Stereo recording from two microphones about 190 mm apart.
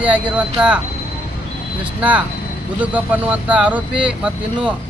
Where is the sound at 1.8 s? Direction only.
5° right (ahead or behind).